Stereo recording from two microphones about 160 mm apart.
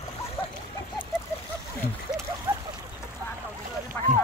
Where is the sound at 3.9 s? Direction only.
10° left (ahead or behind).